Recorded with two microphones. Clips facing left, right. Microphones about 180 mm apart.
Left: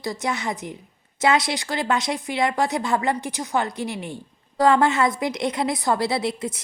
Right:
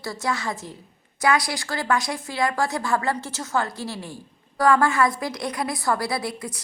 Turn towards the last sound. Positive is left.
turn(degrees=20)  # may be behind; listen again after turning